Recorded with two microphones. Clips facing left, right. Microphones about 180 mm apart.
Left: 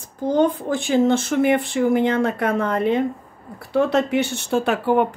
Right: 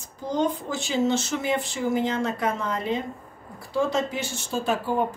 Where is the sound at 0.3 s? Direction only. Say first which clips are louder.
Left 7 dB; 60° left (ahead or behind).